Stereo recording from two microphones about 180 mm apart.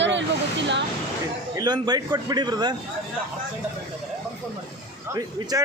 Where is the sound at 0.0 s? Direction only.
80° right.